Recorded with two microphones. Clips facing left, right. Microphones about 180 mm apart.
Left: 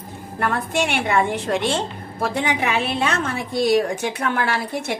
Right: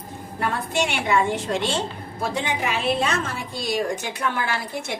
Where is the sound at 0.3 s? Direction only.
60° left (ahead or behind).